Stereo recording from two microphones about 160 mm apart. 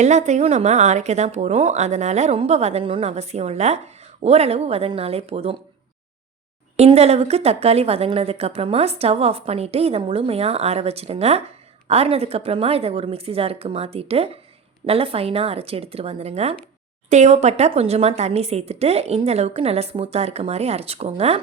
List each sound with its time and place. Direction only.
0.0 s a woman's voice: 45° right (ahead or behind)
6.7 s a woman's voice: 40° right (ahead or behind)